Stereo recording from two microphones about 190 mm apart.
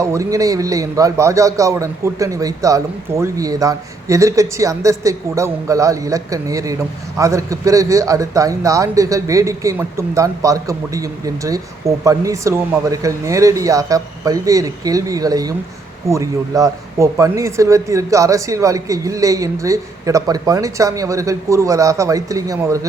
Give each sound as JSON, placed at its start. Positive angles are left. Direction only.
{"t": 0.0, "sound": "a man's voice", "side_deg": -15}